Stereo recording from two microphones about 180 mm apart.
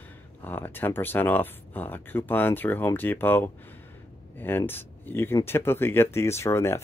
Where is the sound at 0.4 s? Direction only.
10° left (ahead or behind).